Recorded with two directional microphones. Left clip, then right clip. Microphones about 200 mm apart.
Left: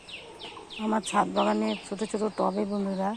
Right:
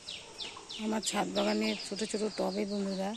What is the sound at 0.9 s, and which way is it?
Speech, 25° right (ahead or behind).